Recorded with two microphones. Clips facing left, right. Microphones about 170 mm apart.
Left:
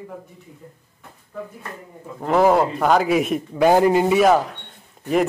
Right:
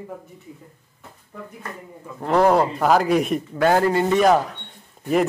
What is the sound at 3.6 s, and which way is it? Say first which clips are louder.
Speech: left 3 dB; 15° left (ahead or behind).